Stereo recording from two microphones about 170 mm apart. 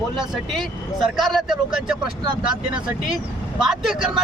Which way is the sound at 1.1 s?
Centre (ahead or behind).